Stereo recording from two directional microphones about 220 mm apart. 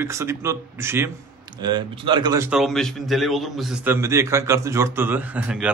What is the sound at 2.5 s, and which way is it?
Speech, centre (ahead or behind).